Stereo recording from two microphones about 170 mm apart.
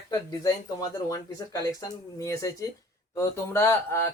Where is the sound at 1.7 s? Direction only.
20° left (ahead or behind).